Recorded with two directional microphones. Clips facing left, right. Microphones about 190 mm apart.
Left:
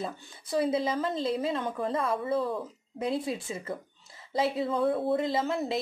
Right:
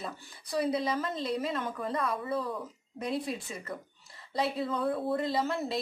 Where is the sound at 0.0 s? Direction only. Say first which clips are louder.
Left 4 dB; 25° left (ahead or behind).